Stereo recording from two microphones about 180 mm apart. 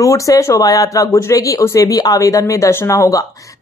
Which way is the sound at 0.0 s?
20° left (ahead or behind).